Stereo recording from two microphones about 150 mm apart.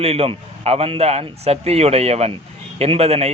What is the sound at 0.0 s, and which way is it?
A man's voice, 40° right (ahead or behind).